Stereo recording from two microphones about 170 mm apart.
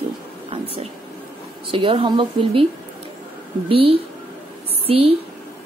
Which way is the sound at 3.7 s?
30° right (ahead or behind).